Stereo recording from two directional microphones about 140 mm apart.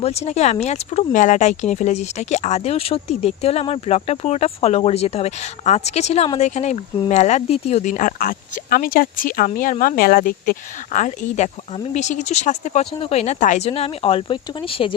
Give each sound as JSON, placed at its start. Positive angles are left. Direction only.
{"t": 0.0, "sound": "speech", "side_deg": 50}
{"t": 9.6, "sound": "speech", "side_deg": 75}
{"t": 13.0, "sound": "speech", "side_deg": 45}
{"t": 13.7, "sound": "speech", "side_deg": 45}